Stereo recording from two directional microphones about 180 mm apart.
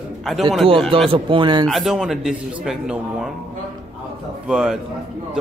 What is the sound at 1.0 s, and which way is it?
Speech, 30° right (ahead or behind).